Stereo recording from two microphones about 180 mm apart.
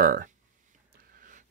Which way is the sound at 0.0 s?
55° right (ahead or behind).